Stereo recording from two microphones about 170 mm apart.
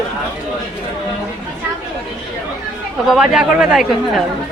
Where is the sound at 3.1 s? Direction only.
5° right (ahead or behind).